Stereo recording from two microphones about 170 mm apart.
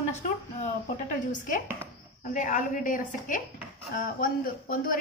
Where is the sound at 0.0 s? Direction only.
45° left (ahead or behind).